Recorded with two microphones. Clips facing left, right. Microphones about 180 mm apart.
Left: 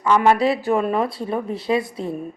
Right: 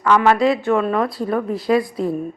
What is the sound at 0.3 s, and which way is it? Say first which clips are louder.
A woman's voice: right 2 dB; 30° left (ahead or behind).